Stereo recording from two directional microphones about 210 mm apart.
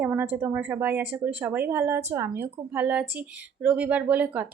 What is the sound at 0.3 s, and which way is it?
A woman's voice, 10° right (ahead or behind).